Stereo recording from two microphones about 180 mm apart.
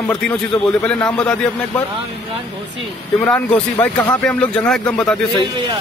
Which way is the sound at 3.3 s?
5° left (ahead or behind).